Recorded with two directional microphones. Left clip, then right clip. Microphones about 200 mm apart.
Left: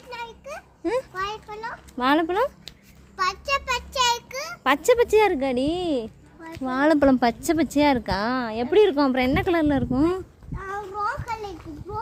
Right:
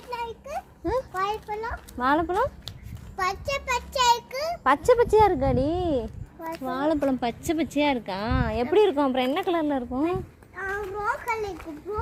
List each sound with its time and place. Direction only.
0.1 s a sound: 20° left (ahead or behind)
0.9 s a sound: 35° left (ahead or behind)
1.2 s a child's voice: 15° left (ahead or behind)
2.0 s a woman's voice: 35° left (ahead or behind)
3.2 s a child's voice: 15° left (ahead or behind)
6.7 s speech: 55° left (ahead or behind)
7.4 s a woman's voice: 30° left (ahead or behind)
8.4 s a child's voice: 15° left (ahead or behind)
8.7 s a woman's voice: 30° left (ahead or behind); by 10.2 s 45° left (ahead or behind)
10.5 s child singing: 5° left (ahead or behind)